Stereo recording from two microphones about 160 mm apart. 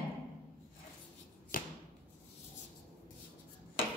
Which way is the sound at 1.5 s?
60° left (ahead or behind).